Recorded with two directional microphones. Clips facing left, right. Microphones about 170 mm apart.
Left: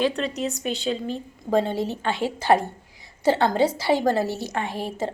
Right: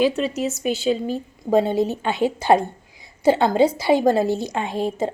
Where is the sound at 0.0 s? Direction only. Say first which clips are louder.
Right 4 dB; 5° right (ahead or behind).